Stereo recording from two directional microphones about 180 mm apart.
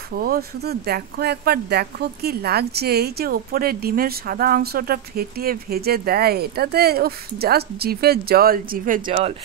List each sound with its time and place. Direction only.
0.1 s speech: 55° right (ahead or behind)